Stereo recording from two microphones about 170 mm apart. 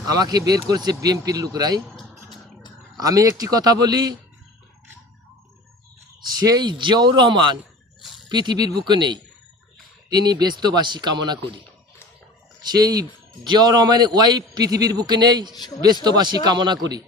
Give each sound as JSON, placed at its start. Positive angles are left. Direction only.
{"t": 0.1, "sound": "a man's voice", "side_deg": -20}
{"t": 3.0, "sound": "a man's voice", "side_deg": -20}
{"t": 6.3, "sound": "a man's voice", "side_deg": -20}
{"t": 12.6, "sound": "a man's voice", "side_deg": -25}